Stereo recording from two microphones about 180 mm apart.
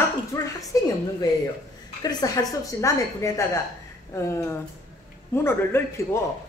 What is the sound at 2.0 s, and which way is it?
A woman's voice, 20° left (ahead or behind).